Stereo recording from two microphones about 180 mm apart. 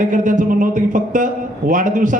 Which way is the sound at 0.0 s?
45° right (ahead or behind).